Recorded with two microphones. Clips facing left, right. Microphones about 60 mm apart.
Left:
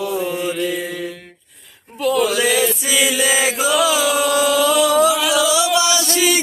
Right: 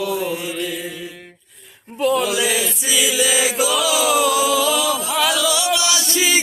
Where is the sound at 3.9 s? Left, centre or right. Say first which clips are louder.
Even; left.